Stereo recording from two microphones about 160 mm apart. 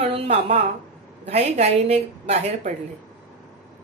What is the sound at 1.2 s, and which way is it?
A woman's voice, 45° right (ahead or behind).